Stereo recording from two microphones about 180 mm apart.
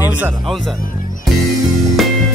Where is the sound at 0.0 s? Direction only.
10° right (ahead or behind).